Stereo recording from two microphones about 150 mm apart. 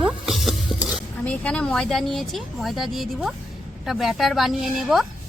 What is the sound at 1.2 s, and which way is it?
Speech, 10° left (ahead or behind).